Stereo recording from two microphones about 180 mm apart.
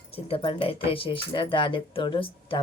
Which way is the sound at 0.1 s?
30° left (ahead or behind).